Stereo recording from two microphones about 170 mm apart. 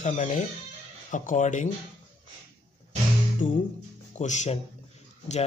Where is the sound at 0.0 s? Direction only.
45° left (ahead or behind).